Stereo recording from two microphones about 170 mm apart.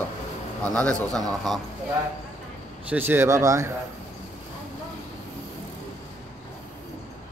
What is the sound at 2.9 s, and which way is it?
Speech, 10° right (ahead or behind).